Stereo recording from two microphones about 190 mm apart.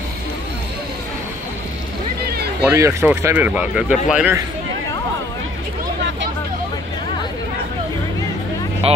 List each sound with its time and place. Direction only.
2.6 s speech: 15° right (ahead or behind)
8.8 s speech: 30° right (ahead or behind)